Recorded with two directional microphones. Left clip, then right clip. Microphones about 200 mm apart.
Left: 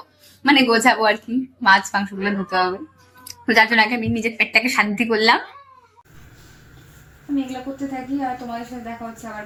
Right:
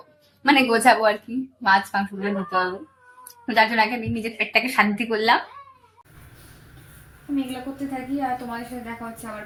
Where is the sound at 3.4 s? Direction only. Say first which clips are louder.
Left 4 dB; 30° left (ahead or behind).